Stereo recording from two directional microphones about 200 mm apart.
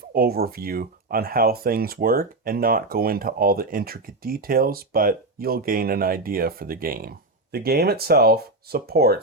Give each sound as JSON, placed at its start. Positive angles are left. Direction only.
{"t": 0.1, "sound": "speech", "side_deg": -50}